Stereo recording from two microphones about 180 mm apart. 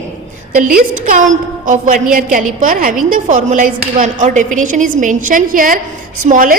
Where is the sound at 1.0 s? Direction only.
45° right (ahead or behind).